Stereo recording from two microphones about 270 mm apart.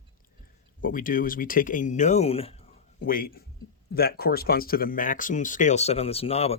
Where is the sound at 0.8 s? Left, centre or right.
Left.